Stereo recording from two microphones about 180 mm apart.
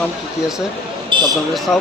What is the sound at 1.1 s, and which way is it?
Basketball bounce, 25° right (ahead or behind).